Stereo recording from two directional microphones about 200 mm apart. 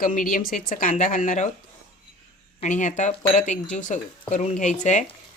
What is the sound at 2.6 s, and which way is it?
Speech, 40° left (ahead or behind).